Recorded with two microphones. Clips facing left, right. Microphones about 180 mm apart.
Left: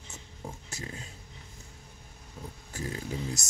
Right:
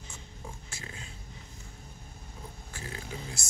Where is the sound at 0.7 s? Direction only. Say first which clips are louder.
Left 4 dB; 40° left (ahead or behind).